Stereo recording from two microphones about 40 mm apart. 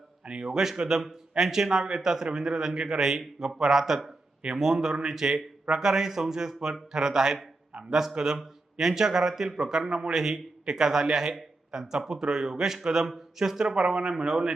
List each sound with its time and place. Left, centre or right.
0.4 s a man's voice: centre